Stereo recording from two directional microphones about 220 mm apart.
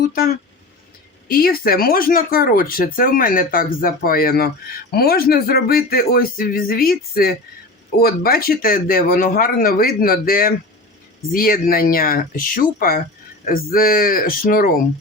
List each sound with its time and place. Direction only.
1.3 s speech: 40° left (ahead or behind)